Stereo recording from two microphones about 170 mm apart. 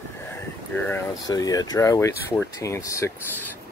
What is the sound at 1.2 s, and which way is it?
Speech, 20° left (ahead or behind).